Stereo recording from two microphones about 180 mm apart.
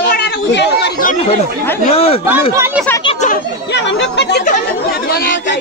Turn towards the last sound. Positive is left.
turn(degrees=75)  # may be behind; listen again after turning